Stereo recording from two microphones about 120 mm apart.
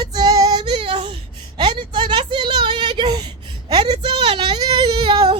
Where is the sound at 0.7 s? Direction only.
45° right (ahead or behind).